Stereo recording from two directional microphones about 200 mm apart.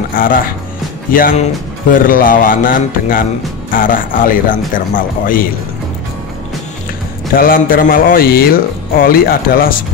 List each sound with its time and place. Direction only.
0.1 s a man's voice: 45° left (ahead or behind)
7.3 s a man's voice: 45° left (ahead or behind)